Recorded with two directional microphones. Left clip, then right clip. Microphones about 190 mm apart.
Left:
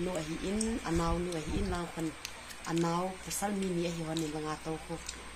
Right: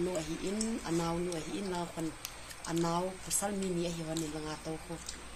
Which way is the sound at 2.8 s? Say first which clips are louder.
Right 1 dB; 20° left (ahead or behind).